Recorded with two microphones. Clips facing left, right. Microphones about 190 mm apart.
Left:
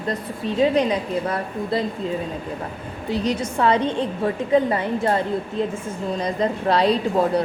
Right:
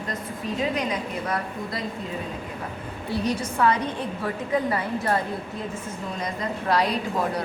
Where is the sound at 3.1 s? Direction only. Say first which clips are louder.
Left 3 dB; 25° left (ahead or behind).